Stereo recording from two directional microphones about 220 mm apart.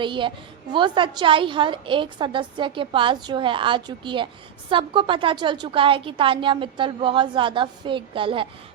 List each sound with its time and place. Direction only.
0.0 s a woman's voice: 20° right (ahead or behind)